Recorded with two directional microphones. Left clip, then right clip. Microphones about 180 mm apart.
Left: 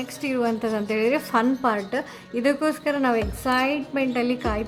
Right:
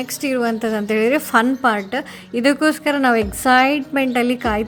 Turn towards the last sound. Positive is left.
turn(degrees=-25)  # may be behind; listen again after turning